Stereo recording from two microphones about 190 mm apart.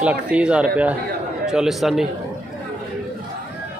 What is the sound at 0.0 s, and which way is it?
Speech, 5° right (ahead or behind).